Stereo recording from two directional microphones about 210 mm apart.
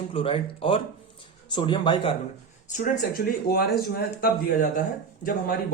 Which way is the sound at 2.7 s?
35° left (ahead or behind).